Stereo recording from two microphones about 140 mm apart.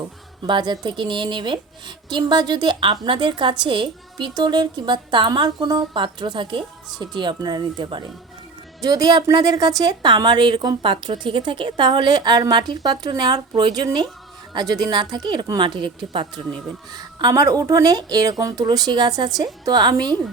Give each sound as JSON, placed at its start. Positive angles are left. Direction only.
{"t": 0.4, "sound": "a woman's voice", "side_deg": -35}